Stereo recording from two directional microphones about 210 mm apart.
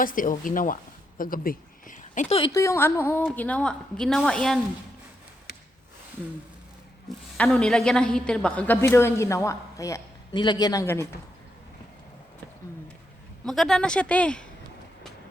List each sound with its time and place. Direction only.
0.0 s speech: 40° left (ahead or behind)
2.3 s a woman's voice: 20° left (ahead or behind); by 4.6 s centre (ahead or behind)
7.3 s a woman's voice: 5° left (ahead or behind)
13.4 s speech: centre (ahead or behind)